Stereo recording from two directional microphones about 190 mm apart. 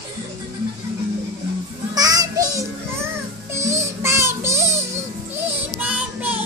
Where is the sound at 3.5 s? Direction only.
15° right (ahead or behind).